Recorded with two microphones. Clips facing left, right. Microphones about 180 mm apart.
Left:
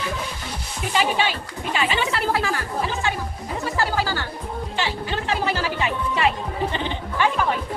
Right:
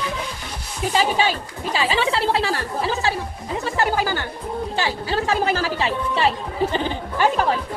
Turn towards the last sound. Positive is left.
turn(degrees=-35)  # may be behind; listen again after turning